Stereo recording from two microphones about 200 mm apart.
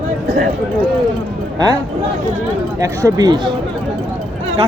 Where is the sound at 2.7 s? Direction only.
15° right (ahead or behind).